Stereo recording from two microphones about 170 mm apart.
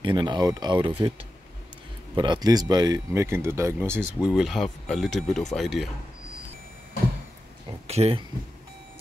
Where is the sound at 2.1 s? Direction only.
25° right (ahead or behind).